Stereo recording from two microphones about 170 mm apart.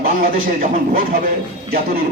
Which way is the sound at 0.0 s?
55° right (ahead or behind).